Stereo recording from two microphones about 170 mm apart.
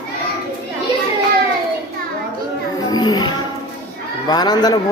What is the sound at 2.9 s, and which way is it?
Music, 25° left (ahead or behind).